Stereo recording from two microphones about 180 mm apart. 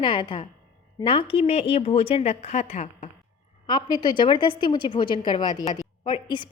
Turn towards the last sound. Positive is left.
turn(degrees=25)  # may be behind; listen again after turning